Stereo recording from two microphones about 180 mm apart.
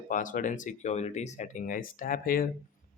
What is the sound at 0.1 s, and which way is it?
Speech, 45° left (ahead or behind).